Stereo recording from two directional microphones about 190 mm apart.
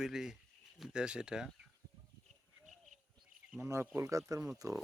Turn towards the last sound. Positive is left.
turn(degrees=-15)  # may be behind; listen again after turning